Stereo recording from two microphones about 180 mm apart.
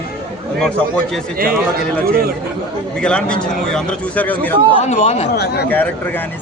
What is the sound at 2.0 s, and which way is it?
Speech, 55° right (ahead or behind).